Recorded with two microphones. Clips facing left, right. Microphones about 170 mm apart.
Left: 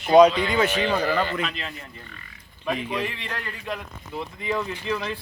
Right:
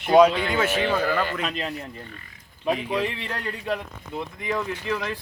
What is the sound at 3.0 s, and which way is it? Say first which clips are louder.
Speech: right 3 dB; 35° right (ahead or behind).